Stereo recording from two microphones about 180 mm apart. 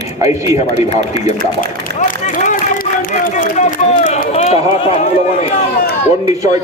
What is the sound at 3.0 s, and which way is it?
Run, 50° left (ahead or behind).